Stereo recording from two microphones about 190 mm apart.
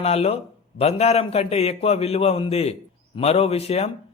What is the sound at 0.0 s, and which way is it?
A man's voice, 35° left (ahead or behind).